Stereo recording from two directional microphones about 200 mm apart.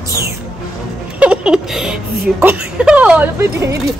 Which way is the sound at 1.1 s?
5° right (ahead or behind).